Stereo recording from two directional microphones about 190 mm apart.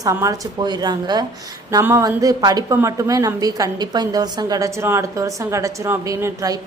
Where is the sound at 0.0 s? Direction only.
15° right (ahead or behind).